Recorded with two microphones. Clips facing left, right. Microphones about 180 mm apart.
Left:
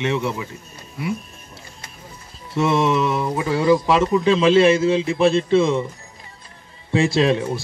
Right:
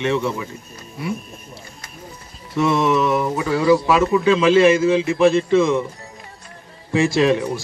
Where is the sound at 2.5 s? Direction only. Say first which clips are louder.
Right 1 dB; 25° left (ahead or behind).